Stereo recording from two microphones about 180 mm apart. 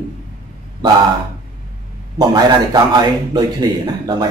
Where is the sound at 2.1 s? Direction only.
25° right (ahead or behind).